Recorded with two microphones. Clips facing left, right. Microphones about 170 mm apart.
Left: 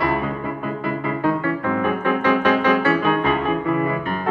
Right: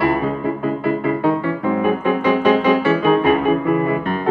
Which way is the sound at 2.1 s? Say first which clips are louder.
Right 2 dB; 20° right (ahead or behind).